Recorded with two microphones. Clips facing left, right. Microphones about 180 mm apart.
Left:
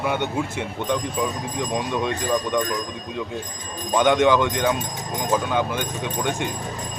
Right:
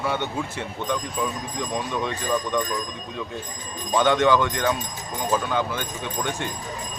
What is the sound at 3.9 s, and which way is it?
Speech, 15° left (ahead or behind).